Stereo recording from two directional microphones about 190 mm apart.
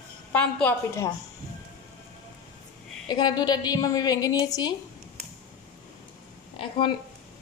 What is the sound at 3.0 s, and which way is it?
A woman's voice, 20° left (ahead or behind).